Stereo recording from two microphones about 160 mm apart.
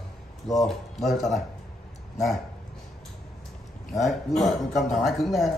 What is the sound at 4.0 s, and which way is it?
A man's voice, centre (ahead or behind).